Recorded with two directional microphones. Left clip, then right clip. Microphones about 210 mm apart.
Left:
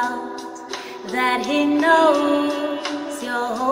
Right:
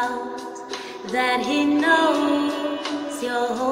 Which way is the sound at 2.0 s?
20° left (ahead or behind).